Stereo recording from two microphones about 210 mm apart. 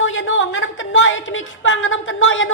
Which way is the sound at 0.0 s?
65° left (ahead or behind).